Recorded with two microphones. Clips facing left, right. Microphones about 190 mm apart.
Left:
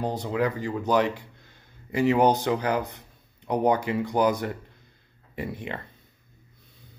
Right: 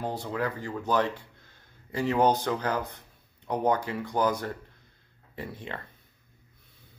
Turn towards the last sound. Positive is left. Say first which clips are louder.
# left 5 dB
turn(degrees=15)  # may be behind; listen again after turning